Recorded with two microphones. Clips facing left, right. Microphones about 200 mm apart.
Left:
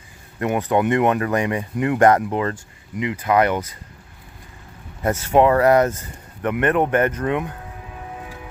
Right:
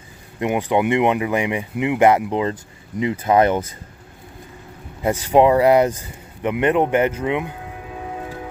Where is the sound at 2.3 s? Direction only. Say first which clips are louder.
Right 2 dB; 20° right (ahead or behind).